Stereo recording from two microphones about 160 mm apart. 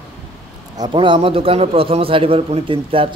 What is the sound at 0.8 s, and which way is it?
A man's voice, 30° right (ahead or behind).